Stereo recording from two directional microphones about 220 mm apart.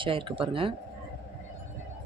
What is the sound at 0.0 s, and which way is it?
Speech, 25° right (ahead or behind).